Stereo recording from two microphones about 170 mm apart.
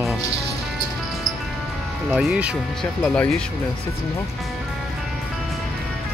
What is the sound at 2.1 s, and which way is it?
Speech, 5° right (ahead or behind).